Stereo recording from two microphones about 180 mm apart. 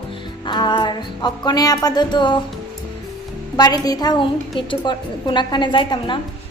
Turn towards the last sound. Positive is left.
turn(degrees=25)  # may be behind; listen again after turning